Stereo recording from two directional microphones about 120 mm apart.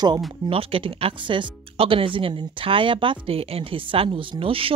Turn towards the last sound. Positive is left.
turn(degrees=-50)  # may be behind; listen again after turning